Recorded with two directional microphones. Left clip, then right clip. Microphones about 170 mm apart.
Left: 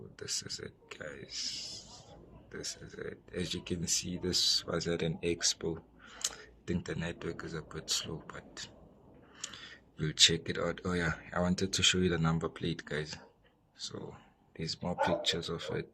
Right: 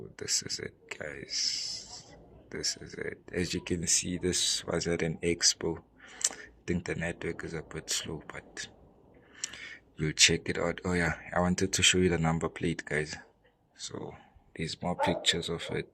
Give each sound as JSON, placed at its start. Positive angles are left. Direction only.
{"t": 0.2, "sound": "speech", "side_deg": -25}
{"t": 6.3, "sound": "a sound", "side_deg": -20}
{"t": 6.7, "sound": "speech", "side_deg": -20}